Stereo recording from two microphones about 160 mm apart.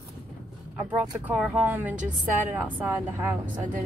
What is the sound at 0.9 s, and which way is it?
Speech, 10° right (ahead or behind).